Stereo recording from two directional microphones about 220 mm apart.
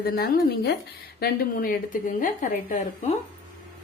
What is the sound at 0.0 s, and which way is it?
A woman's voice, 45° left (ahead or behind).